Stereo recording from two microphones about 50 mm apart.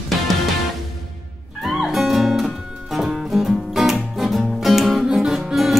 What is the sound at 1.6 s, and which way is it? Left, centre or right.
Music, centre.